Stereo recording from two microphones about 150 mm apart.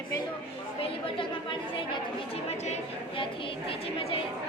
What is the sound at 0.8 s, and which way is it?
A woman's voice, 35° left (ahead or behind).